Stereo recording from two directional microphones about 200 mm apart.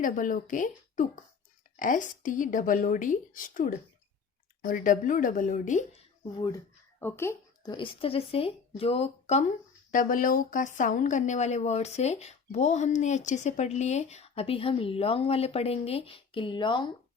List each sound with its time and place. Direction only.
0.0 s speech: 40° left (ahead or behind)
7.0 s speech: 15° left (ahead or behind)